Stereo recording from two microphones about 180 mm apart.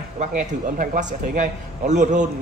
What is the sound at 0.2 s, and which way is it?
Speech, 45° right (ahead or behind).